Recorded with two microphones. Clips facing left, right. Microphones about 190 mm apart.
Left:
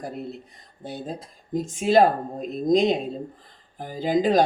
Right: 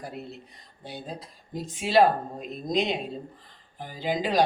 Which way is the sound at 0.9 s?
45° left (ahead or behind).